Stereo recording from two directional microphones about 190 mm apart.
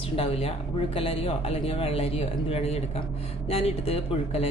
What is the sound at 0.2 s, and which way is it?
Speech, 30° left (ahead or behind).